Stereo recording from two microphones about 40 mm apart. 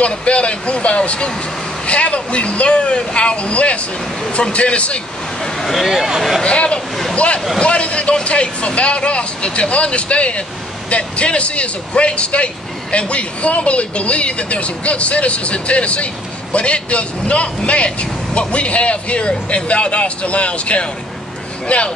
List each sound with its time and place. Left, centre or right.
0.0 s speech: left
5.9 s speech: centre
6.4 s speech: left